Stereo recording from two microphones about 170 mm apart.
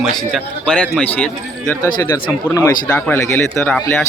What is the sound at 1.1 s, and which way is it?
Speech, 10° left (ahead or behind).